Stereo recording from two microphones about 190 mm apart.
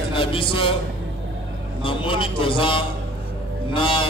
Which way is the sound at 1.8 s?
25° left (ahead or behind).